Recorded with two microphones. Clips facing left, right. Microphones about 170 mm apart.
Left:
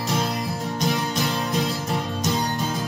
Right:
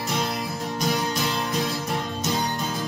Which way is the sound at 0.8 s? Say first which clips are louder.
Even; centre (ahead or behind).